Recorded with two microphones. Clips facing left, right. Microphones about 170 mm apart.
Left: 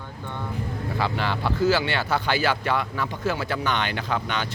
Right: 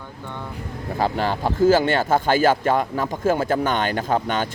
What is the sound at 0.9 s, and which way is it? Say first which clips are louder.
Speech: right 5 dB; 40° right (ahead or behind).